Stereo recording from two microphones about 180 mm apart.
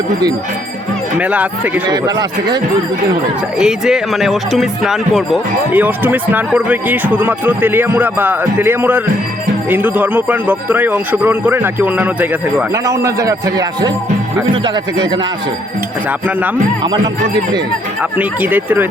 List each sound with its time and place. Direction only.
1.2 s speech: 10° right (ahead or behind)
1.9 s a man's voice: 25° right (ahead or behind)
3.6 s a man's voice: 5° right (ahead or behind); by 15.2 s 25° right (ahead or behind)
16.8 s a man's voice: 25° right (ahead or behind)
18.2 s speech: 10° right (ahead or behind)